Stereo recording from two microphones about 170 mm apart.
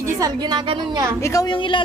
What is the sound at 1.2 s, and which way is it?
Speech, 20° left (ahead or behind).